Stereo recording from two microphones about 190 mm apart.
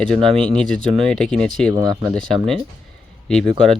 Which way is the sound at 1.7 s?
20° right (ahead or behind).